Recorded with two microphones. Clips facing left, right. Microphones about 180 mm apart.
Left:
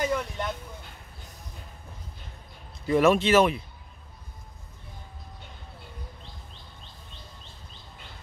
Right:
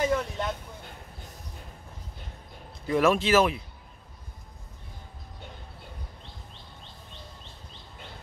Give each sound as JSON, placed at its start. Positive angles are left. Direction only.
{"t": 0.0, "sound": "vehicle", "side_deg": 0}
{"t": 2.9, "sound": "speech", "side_deg": 0}